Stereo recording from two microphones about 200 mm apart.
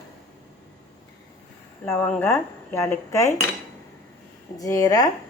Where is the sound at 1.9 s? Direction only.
10° left (ahead or behind).